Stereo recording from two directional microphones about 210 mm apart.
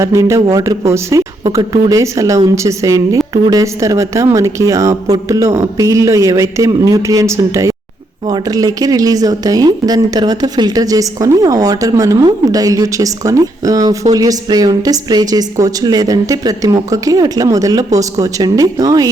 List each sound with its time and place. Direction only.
0.0 s a woman's voice: 15° right (ahead or behind)